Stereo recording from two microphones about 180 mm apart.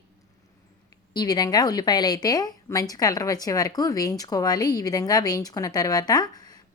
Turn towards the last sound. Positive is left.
turn(degrees=20)  # may be behind; listen again after turning